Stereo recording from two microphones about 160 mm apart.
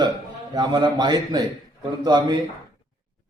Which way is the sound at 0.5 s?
25° right (ahead or behind).